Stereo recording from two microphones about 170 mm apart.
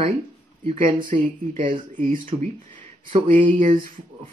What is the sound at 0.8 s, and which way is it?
Speech, 50° right (ahead or behind).